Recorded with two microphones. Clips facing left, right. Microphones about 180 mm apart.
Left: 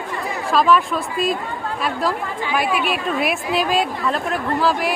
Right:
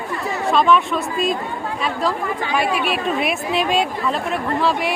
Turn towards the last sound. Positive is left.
turn(degrees=0)  # may be behind; listen again after turning